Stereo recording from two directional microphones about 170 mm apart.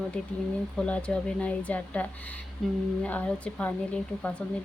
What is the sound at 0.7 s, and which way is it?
Speech, 5° left (ahead or behind).